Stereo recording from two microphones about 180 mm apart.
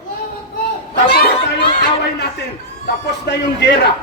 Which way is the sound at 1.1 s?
60° left (ahead or behind).